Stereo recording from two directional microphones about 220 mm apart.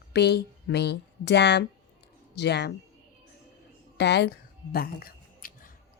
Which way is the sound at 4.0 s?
50° left (ahead or behind).